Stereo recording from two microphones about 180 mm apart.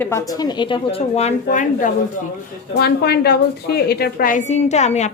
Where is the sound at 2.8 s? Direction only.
65° left (ahead or behind).